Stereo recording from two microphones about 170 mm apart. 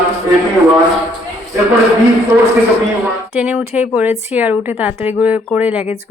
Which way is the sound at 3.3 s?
5° right (ahead or behind).